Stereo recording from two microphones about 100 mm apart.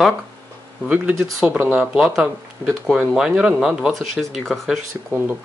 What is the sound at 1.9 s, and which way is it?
Speech, 5° right (ahead or behind).